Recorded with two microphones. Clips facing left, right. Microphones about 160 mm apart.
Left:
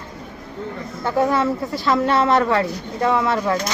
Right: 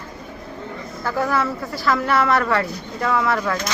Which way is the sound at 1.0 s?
20° left (ahead or behind).